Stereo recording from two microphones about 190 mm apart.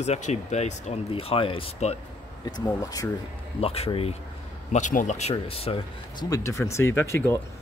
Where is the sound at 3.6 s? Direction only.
30° left (ahead or behind).